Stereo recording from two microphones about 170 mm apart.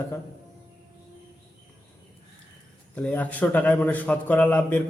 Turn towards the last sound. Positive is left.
turn(degrees=10)  # may be behind; listen again after turning